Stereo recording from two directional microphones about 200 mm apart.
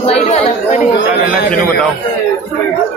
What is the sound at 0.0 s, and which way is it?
Speech, 30° left (ahead or behind).